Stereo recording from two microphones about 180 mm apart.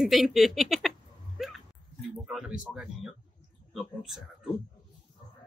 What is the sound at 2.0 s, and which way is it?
Speech, centre (ahead or behind).